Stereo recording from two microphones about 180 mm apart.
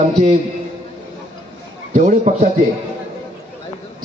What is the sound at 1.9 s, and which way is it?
Speech, 45° right (ahead or behind).